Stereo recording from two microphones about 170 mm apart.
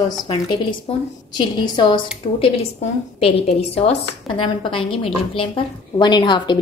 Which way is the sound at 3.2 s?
35° left (ahead or behind).